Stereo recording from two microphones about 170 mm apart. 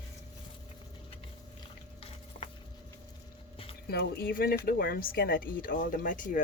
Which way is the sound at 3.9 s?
65° left (ahead or behind).